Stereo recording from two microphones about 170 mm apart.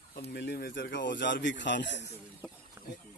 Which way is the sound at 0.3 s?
70° left (ahead or behind).